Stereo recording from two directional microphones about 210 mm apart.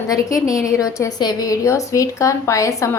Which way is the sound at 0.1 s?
15° left (ahead or behind).